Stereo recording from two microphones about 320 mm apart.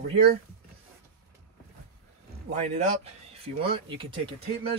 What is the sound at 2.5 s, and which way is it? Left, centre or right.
Speech, centre.